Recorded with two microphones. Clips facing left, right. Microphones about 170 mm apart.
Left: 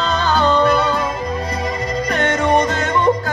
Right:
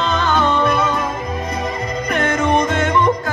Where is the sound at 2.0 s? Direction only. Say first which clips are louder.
Even; 35° left (ahead or behind).